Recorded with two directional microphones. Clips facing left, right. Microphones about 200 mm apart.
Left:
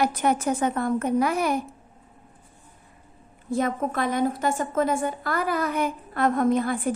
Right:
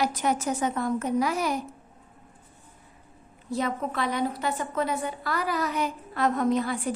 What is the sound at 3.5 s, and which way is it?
A woman's voice, 50° left (ahead or behind).